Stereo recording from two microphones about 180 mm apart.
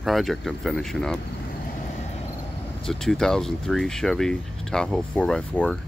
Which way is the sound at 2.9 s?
5° left (ahead or behind).